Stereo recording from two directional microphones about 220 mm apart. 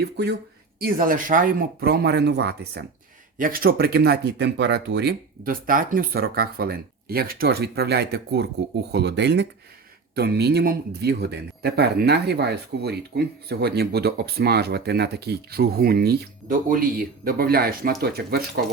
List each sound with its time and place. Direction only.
0.0 s speech: 50° right (ahead or behind)